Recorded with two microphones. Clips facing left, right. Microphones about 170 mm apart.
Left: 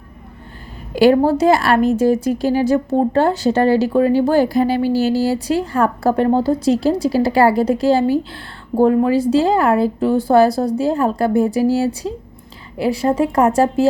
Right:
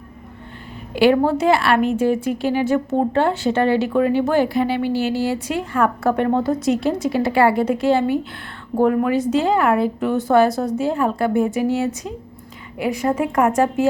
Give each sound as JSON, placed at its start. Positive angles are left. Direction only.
{"t": 0.9, "sound": "a woman's voice", "side_deg": 40}